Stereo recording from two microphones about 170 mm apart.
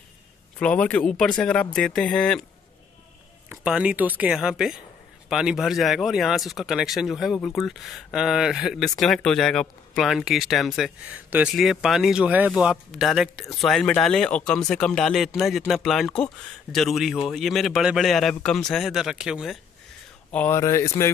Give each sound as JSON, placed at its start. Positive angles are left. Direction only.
{"t": 0.6, "sound": "speech", "side_deg": 5}
{"t": 3.4, "sound": "speech", "side_deg": -5}
{"t": 20.2, "sound": "speech", "side_deg": 10}